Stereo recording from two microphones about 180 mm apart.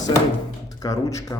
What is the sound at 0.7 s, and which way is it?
Speech, 20° left (ahead or behind).